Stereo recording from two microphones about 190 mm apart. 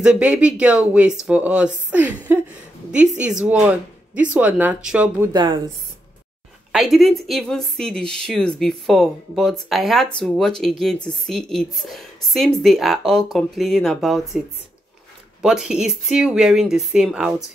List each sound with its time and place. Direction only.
0.0 s a woman's voice: 5° right (ahead or behind)
5.3 s a woman's voice: 25° right (ahead or behind)
6.7 s a woman's voice: centre (ahead or behind)
15.4 s a woman's voice: 5° right (ahead or behind)